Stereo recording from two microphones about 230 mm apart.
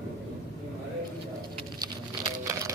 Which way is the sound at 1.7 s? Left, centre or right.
Centre.